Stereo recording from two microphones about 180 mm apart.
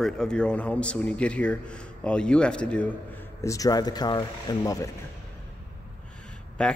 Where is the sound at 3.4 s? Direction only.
20° left (ahead or behind).